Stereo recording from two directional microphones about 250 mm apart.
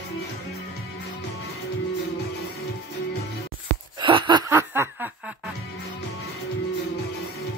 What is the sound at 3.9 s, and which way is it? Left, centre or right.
Snicker, centre.